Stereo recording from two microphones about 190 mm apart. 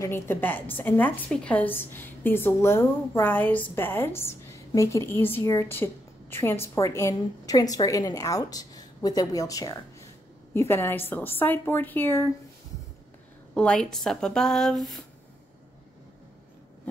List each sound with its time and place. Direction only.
0.0 s a woman's voice: 10° left (ahead or behind)
13.6 s a woman's voice: 5° left (ahead or behind)